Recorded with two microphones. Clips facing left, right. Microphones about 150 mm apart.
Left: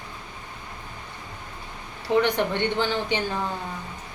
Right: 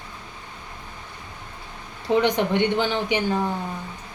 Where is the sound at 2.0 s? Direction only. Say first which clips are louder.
Right 2 dB; 15° right (ahead or behind).